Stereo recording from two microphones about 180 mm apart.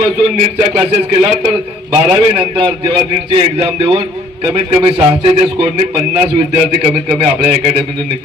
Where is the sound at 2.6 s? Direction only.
30° right (ahead or behind).